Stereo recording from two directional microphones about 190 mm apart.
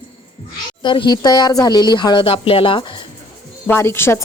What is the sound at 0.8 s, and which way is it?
Speech, 25° left (ahead or behind).